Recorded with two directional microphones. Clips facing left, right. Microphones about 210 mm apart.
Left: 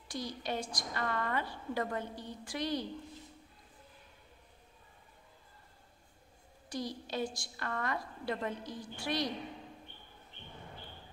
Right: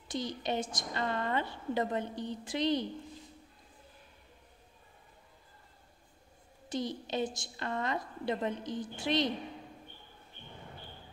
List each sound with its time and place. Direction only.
0.1 s a woman's voice: 20° right (ahead or behind)
6.7 s a woman's voice: 20° right (ahead or behind)